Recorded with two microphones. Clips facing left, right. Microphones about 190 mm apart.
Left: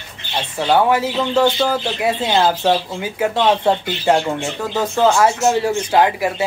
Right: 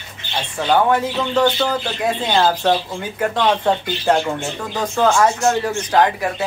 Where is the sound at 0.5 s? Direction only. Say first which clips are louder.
Left 1 dB; 5° left (ahead or behind).